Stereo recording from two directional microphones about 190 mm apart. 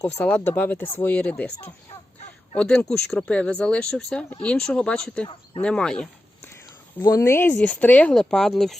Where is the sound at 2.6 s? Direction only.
5° left (ahead or behind).